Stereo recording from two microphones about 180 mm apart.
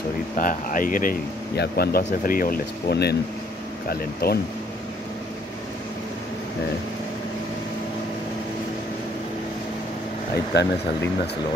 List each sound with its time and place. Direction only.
0.4 s speech: 50° left (ahead or behind)
10.5 s speech: 70° left (ahead or behind)